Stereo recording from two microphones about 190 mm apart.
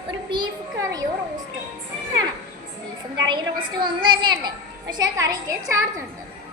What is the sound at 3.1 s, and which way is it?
A woman's voice, 25° right (ahead or behind).